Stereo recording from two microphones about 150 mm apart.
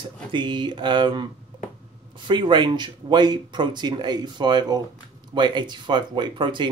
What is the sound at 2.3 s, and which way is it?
Speech, 30° right (ahead or behind).